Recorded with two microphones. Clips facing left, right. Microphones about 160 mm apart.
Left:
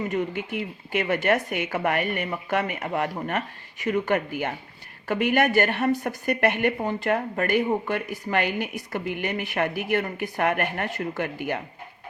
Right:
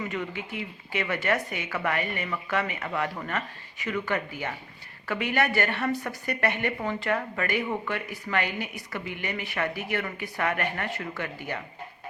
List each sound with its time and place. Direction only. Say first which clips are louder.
0.0 s speech: left 6 dB; 40° left (ahead or behind)
6.7 s speech: left 3 dB; 40° left (ahead or behind)